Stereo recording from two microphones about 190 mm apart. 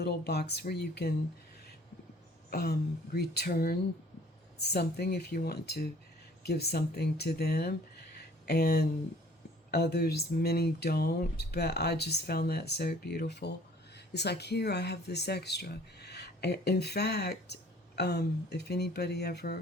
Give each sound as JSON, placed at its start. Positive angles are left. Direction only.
{"t": 0.0, "sound": "speech", "side_deg": 60}
{"t": 2.5, "sound": "speech", "side_deg": 55}